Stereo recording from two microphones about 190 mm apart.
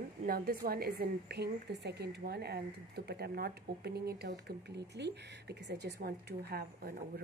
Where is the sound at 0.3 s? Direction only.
55° right (ahead or behind).